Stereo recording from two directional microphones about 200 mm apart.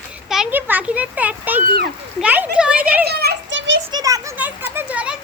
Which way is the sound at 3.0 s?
55° right (ahead or behind).